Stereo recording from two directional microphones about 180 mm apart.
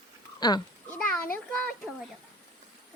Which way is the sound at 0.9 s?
5° left (ahead or behind).